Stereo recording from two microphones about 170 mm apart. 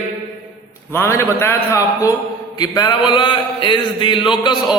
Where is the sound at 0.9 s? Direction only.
15° left (ahead or behind).